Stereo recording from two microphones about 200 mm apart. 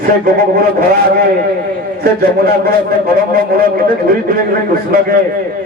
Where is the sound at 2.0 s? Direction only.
50° right (ahead or behind).